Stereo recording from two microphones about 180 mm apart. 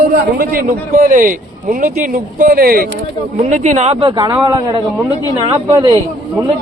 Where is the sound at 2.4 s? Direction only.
55° right (ahead or behind).